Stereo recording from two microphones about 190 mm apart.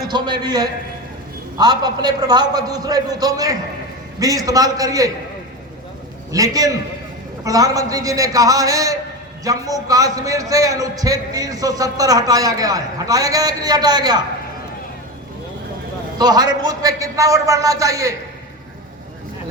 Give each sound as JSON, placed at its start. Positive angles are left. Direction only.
{"t": 0.1, "sound": "a man's voice", "side_deg": -20}
{"t": 6.3, "sound": "a man's voice", "side_deg": -20}
{"t": 16.1, "sound": "a man's voice", "side_deg": -20}